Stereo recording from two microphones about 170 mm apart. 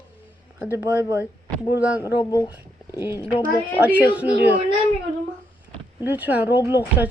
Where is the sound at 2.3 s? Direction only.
20° left (ahead or behind).